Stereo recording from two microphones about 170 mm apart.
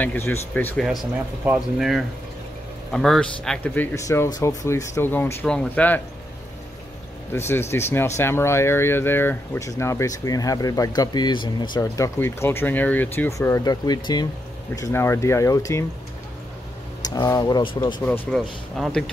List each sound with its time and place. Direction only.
0.0 s speech: 10° left (ahead or behind)
1.4 s speech: 5° right (ahead or behind)
7.3 s speech: 15° left (ahead or behind)
13.4 s speech: 20° left (ahead or behind)
17.0 s speech: 20° left (ahead or behind)
18.0 s speech: 10° left (ahead or behind)